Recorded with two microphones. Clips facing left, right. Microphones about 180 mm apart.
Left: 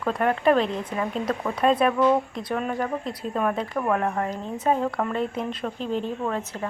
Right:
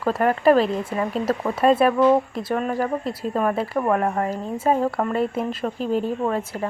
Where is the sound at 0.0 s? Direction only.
5° right (ahead or behind).